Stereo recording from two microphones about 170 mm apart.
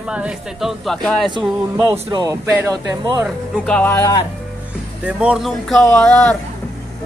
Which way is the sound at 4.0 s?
20° left (ahead or behind).